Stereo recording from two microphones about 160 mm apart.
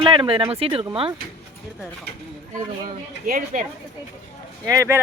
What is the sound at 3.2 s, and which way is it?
Speech, 55° right (ahead or behind).